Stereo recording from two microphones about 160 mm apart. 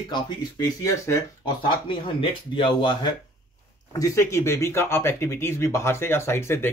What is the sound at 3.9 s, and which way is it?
Speech, 20° left (ahead or behind).